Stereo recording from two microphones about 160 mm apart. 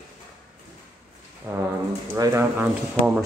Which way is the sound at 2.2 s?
15° right (ahead or behind).